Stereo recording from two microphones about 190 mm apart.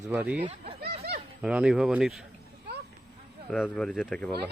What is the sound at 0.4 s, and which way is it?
Speech, 35° right (ahead or behind).